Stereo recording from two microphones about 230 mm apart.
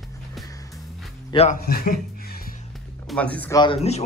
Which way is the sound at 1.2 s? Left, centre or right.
Left.